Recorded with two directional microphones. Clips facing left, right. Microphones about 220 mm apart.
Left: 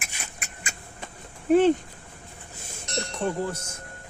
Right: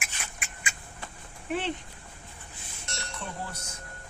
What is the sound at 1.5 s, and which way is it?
Speech, 45° left (ahead or behind).